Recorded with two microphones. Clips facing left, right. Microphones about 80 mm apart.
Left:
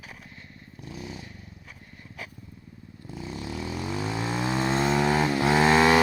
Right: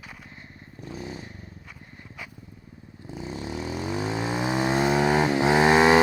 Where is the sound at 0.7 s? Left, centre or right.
Right.